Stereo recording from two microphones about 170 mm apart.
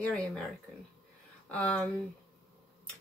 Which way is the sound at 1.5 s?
5° left (ahead or behind).